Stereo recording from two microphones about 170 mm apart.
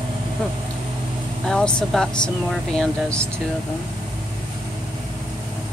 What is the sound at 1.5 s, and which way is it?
Speech, 5° left (ahead or behind).